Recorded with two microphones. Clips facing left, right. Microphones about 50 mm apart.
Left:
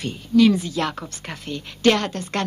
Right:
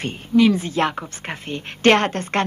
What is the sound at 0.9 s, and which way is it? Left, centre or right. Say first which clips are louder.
Speech: right 3 dB; right.